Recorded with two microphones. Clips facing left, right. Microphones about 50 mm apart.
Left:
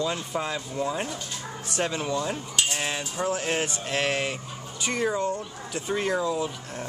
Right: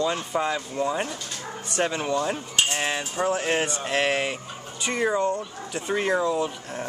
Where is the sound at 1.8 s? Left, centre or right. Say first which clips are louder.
Right 3 dB; centre.